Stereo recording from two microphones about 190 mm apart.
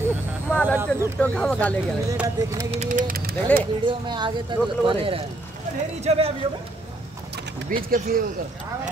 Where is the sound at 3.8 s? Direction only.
25° right (ahead or behind).